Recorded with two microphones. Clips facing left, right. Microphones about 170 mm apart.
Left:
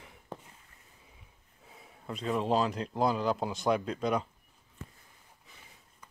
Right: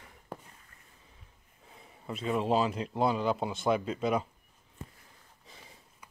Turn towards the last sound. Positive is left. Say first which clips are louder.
# right 1 dB
turn(degrees=-5)  # may be behind; listen again after turning